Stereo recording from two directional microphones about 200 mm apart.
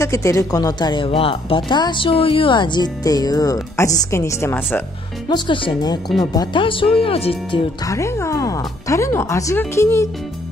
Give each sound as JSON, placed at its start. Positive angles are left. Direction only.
{"t": 0.0, "sound": "speech", "side_deg": 15}
{"t": 5.3, "sound": "speech", "side_deg": 25}
{"t": 7.8, "sound": "speech", "side_deg": 15}